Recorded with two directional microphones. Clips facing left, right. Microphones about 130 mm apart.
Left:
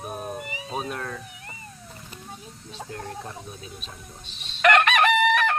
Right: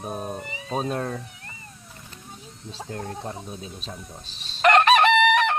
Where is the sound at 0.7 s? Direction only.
30° right (ahead or behind).